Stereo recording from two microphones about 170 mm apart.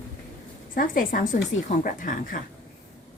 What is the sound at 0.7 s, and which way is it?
A woman's voice, 55° left (ahead or behind).